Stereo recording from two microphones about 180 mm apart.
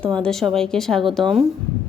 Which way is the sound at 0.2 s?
5° left (ahead or behind).